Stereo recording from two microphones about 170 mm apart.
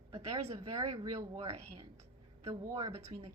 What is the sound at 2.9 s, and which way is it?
Speech, 35° right (ahead or behind).